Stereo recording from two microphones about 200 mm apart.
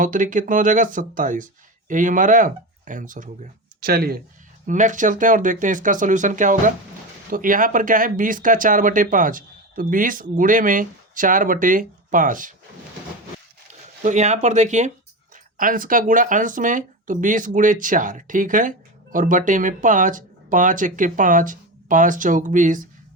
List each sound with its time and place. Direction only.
0.0 s speech: 40° right (ahead or behind)
14.0 s speech: 35° right (ahead or behind)